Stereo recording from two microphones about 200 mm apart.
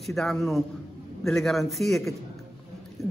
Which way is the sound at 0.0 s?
Centre (ahead or behind).